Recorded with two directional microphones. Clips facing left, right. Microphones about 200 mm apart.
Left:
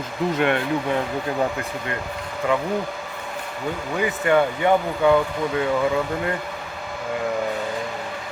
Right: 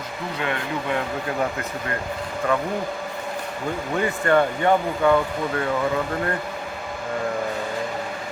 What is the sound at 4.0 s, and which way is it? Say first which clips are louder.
Speech: even; 10° left (ahead or behind).